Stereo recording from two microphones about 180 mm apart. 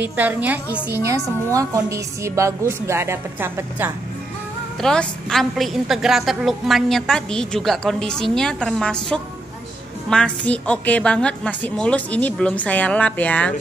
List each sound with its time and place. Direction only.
0.0 s a woman's voice: 10° right (ahead or behind)
4.8 s a woman's voice: 5° left (ahead or behind)